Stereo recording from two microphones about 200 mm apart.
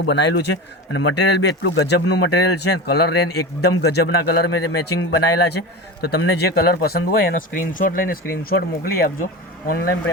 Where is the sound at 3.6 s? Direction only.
55° left (ahead or behind).